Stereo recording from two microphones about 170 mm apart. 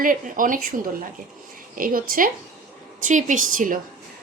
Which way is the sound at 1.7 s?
55° right (ahead or behind).